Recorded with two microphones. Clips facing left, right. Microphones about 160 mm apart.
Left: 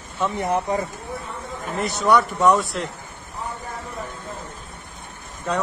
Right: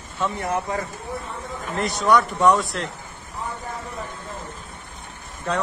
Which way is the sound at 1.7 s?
Centre (ahead or behind).